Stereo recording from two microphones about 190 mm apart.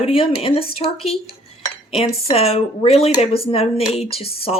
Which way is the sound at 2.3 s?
30° left (ahead or behind).